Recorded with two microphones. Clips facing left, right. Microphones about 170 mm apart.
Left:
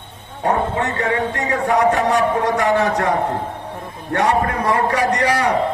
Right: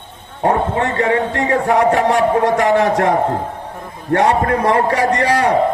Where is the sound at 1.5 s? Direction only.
30° right (ahead or behind).